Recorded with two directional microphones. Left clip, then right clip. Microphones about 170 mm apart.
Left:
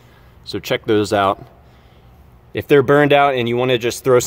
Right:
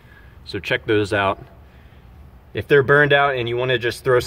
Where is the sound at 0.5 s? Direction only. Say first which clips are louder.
Left 2 dB; 45° left (ahead or behind).